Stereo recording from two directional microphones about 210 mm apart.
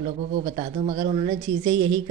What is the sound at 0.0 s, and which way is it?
A woman's voice, 40° right (ahead or behind).